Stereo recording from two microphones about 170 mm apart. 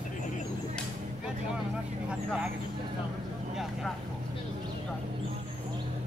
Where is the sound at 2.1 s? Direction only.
5° right (ahead or behind).